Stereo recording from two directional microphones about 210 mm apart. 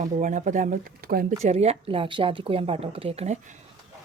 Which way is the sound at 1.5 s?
30° right (ahead or behind).